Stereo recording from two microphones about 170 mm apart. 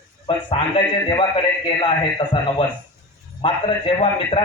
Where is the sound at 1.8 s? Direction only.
30° left (ahead or behind).